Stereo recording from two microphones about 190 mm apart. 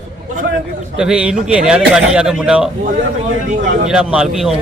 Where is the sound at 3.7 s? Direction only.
45° right (ahead or behind).